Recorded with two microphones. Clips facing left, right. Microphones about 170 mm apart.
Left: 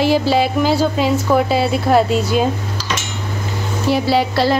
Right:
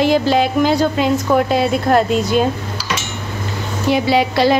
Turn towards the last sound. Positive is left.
turn(degrees=0)  # may be behind; listen again after turning